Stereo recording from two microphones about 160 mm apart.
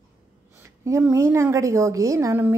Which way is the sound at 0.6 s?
15° right (ahead or behind).